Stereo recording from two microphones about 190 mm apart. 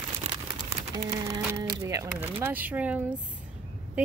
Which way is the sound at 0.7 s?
35° right (ahead or behind).